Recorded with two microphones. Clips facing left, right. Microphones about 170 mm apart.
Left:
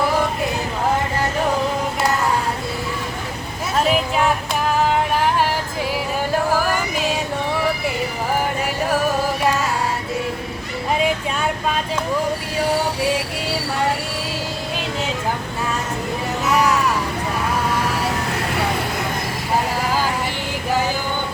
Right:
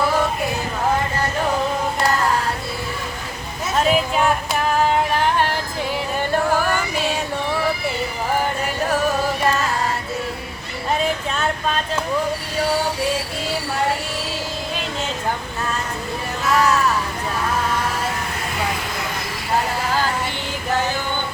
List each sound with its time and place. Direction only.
3.8 s female singing: centre (ahead or behind)
5.9 s music: 5° left (ahead or behind)
11.0 s vehicle: 10° left (ahead or behind)
16.5 s a sound: 15° left (ahead or behind)